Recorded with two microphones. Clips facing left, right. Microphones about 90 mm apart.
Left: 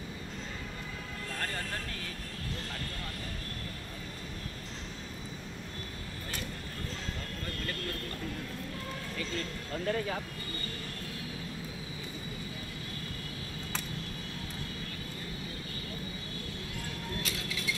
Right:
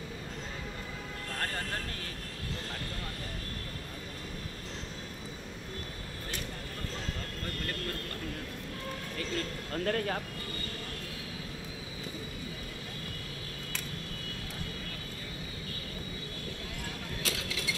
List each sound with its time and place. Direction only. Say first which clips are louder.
9.8 s speech: right 1 dB; 55° right (ahead or behind)
17.2 s mechanisms: right 1 dB; 90° right